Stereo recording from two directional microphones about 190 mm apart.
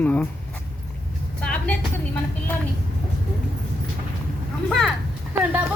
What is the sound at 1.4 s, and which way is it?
Vehicle, 5° left (ahead or behind).